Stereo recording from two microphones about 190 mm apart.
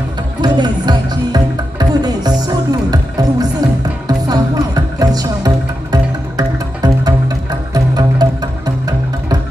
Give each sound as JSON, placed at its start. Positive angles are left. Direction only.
{"t": 0.4, "sound": "music", "side_deg": -20}